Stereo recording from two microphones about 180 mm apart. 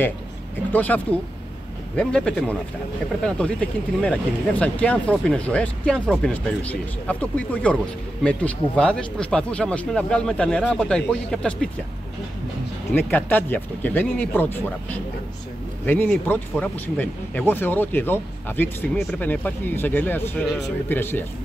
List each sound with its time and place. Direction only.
0.7 s speech: 10° left (ahead or behind)
12.9 s speech: 10° left (ahead or behind)